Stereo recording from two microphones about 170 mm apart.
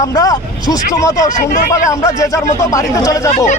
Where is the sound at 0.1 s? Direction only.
20° left (ahead or behind).